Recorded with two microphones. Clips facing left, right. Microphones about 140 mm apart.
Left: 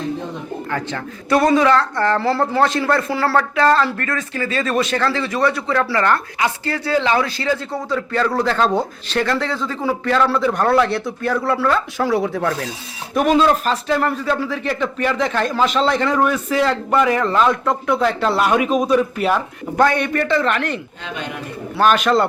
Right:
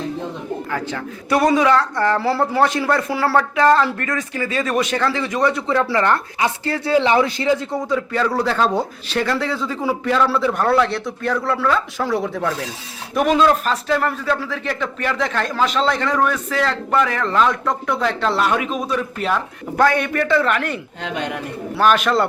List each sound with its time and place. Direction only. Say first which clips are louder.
0.7 s speech: even; 5° right (ahead or behind)
21.0 s a man's voice: right 4 dB; 70° right (ahead or behind)
21.8 s speech: left 1 dB; centre (ahead or behind)